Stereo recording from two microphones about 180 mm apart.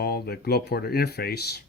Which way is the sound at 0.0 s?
60° left (ahead or behind).